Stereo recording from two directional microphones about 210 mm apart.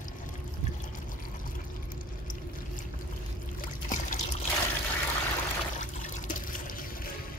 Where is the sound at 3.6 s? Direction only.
40° left (ahead or behind).